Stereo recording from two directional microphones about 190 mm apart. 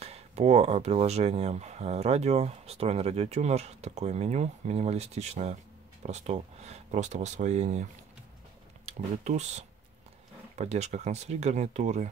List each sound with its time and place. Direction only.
0.0 s speech: 35° right (ahead or behind)